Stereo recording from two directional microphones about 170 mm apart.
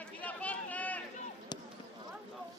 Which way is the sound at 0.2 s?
10° left (ahead or behind).